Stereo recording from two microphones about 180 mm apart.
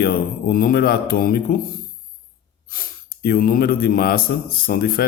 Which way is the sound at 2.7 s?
55° left (ahead or behind).